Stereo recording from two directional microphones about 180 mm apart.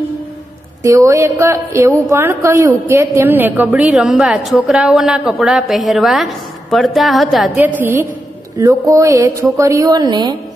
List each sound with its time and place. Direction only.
0.8 s a woman's voice: 15° right (ahead or behind); by 7.6 s centre (ahead or behind)
7.8 s speech: 15° right (ahead or behind)